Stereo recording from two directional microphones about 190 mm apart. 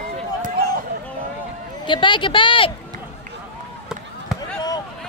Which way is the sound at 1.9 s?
25° left (ahead or behind).